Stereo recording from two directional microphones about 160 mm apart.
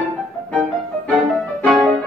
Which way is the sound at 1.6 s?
Centre (ahead or behind).